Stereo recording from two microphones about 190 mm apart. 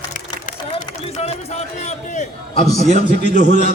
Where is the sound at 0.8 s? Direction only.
35° left (ahead or behind).